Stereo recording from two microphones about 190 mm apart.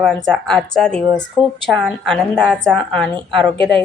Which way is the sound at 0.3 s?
5° left (ahead or behind).